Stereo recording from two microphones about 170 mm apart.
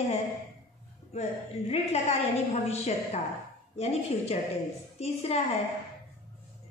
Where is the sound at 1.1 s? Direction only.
35° left (ahead or behind).